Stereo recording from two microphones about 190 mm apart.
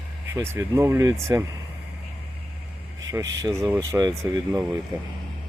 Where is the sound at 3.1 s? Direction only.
15° right (ahead or behind).